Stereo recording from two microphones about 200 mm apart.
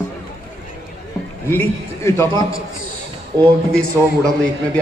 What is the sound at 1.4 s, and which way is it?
A man's voice, 10° left (ahead or behind).